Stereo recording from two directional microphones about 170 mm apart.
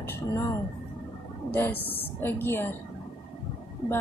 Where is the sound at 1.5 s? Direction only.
10° left (ahead or behind).